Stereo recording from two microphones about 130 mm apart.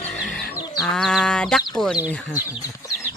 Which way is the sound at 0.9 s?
5° left (ahead or behind).